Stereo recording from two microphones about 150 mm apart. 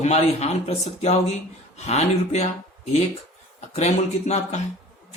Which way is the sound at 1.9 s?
45° left (ahead or behind).